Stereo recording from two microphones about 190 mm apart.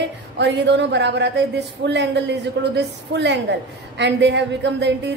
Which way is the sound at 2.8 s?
65° right (ahead or behind).